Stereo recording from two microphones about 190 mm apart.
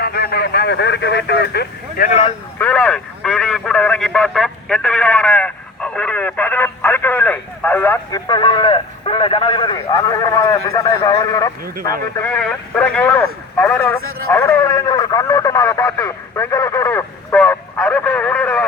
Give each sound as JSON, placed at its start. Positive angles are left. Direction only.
{"t": 0.0, "sound": "speech", "side_deg": 55}
{"t": 2.0, "sound": "a man's voice", "side_deg": 35}
{"t": 2.6, "sound": "speech", "side_deg": 10}
{"t": 12.1, "sound": "speech", "side_deg": 10}